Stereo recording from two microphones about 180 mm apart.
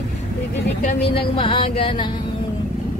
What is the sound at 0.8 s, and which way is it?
A woman's voice, 30° left (ahead or behind).